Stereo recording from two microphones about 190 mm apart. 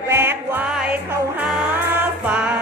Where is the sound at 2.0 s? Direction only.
5° right (ahead or behind).